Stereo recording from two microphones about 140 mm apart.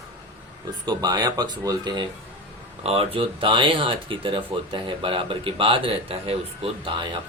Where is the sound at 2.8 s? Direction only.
45° right (ahead or behind).